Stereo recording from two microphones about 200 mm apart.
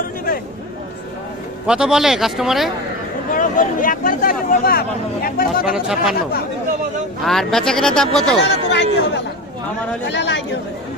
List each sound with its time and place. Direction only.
1.6 s speech: 5° right (ahead or behind)
3.3 s speech: 40° left (ahead or behind)
5.6 s speech: 5° right (ahead or behind)
7.3 s speech: centre (ahead or behind)
8.4 s speech: 60° left (ahead or behind)